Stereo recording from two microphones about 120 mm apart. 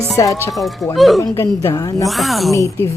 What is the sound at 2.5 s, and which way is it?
Speech, 25° left (ahead or behind).